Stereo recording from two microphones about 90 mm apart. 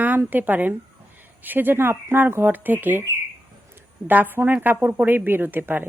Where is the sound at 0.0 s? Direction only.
20° right (ahead or behind).